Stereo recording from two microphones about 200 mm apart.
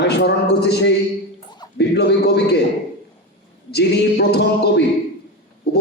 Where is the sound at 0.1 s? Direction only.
60° left (ahead or behind).